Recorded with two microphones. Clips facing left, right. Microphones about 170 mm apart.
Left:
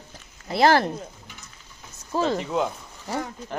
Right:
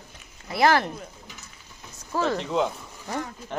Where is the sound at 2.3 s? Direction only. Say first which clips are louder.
Even; 5° left (ahead or behind).